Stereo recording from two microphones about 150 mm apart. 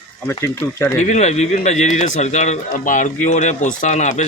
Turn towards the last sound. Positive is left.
turn(degrees=50)  # may be behind; listen again after turning